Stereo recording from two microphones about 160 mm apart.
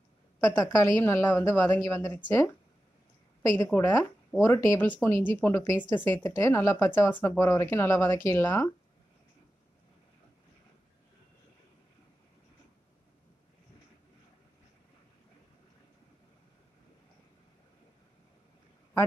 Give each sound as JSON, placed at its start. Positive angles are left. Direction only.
{"t": 0.5, "sound": "speech", "side_deg": 15}